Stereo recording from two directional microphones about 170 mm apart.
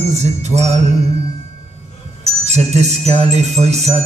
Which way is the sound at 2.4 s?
40° right (ahead or behind).